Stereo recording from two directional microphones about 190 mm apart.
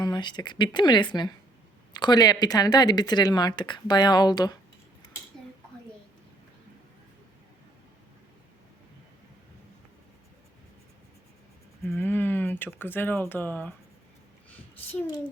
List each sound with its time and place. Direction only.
0.0 s speech: 25° left (ahead or behind)
11.9 s speech: 10° left (ahead or behind)